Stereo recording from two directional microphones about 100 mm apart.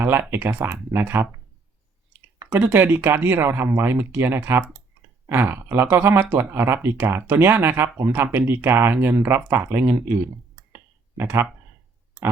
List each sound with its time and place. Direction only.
0.0 s speech: 20° right (ahead or behind)
2.5 s speech: 20° right (ahead or behind)
11.2 s speech: 25° right (ahead or behind)